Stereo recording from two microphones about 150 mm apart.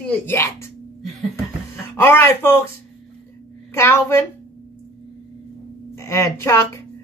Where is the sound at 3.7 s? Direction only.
15° left (ahead or behind).